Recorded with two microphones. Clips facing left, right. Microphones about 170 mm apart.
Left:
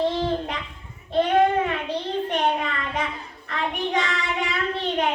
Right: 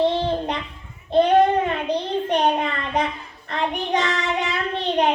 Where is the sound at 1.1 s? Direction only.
35° right (ahead or behind).